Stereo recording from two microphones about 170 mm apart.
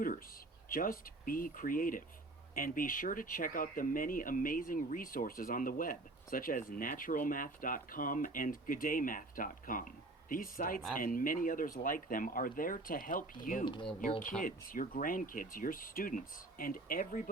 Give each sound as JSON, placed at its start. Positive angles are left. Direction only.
{"t": 0.7, "sound": "speech", "side_deg": 55}